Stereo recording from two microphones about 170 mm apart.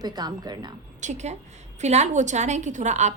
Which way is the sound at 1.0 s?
45° right (ahead or behind).